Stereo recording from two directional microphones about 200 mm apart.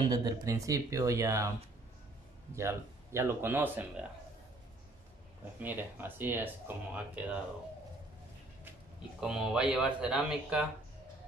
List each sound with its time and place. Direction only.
0.1 s speech: 15° right (ahead or behind)
2.5 s speech: 15° right (ahead or behind)
5.6 s speech: 10° right (ahead or behind)
9.2 s speech: 5° right (ahead or behind)